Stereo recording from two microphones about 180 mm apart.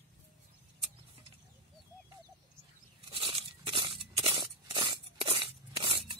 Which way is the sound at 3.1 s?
30° right (ahead or behind).